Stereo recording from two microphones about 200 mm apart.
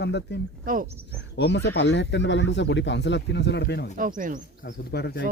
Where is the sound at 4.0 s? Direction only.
40° right (ahead or behind).